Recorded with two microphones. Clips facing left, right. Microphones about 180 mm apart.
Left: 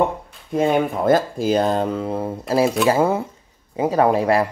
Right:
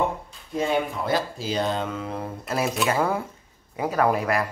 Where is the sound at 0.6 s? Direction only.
50° left (ahead or behind).